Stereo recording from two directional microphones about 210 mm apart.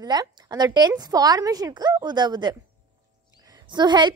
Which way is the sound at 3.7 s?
20° right (ahead or behind).